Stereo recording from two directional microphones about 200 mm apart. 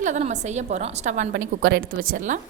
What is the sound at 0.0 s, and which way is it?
Speech, 35° right (ahead or behind).